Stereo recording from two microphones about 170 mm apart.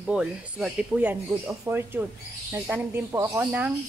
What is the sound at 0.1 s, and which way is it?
Speech, 5° right (ahead or behind).